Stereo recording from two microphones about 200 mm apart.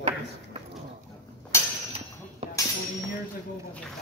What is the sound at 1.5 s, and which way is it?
Mechanisms, 15° left (ahead or behind).